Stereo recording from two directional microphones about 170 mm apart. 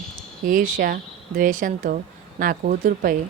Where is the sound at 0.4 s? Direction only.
55° right (ahead or behind).